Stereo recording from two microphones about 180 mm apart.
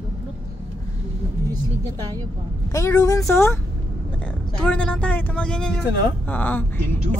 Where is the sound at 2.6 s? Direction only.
15° left (ahead or behind).